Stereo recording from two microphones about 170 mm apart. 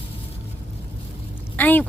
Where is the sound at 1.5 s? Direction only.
10° left (ahead or behind).